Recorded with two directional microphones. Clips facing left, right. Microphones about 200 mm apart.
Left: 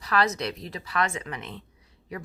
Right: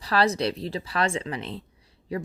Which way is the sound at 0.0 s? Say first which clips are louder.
Right 3 dB; 30° right (ahead or behind).